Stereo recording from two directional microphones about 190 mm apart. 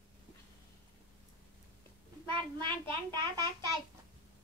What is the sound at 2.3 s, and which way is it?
Child singing, 25° right (ahead or behind).